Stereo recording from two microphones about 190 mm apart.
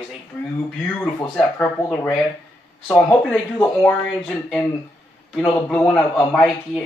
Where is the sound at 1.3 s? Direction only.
5° left (ahead or behind).